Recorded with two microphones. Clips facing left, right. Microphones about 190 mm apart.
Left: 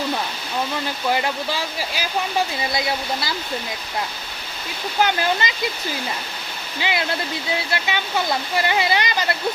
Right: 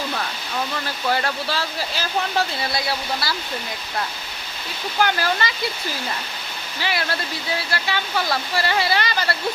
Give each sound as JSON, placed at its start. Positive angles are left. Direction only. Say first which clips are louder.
{"t": 0.9, "sound": "speech", "louder": "even", "side_deg": 15}
{"t": 4.9, "sound": "speech", "louder": "left 1 dB", "side_deg": 20}
{"t": 6.7, "sound": "speech", "louder": "left 2 dB", "side_deg": 20}